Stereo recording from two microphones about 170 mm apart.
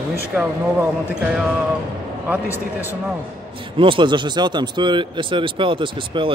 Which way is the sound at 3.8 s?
30° right (ahead or behind).